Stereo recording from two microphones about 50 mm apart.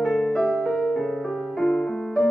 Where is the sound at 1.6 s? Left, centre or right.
Left.